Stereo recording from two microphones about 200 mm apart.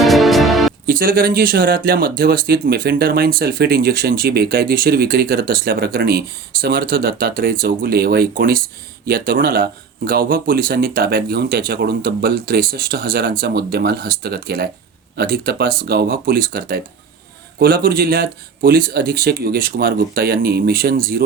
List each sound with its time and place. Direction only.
0.0 s music: centre (ahead or behind)
0.9 s speech: 45° right (ahead or behind)